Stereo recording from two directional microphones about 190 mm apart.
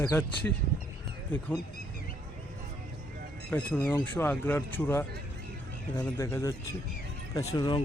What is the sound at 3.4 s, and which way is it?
Speech, 10° left (ahead or behind).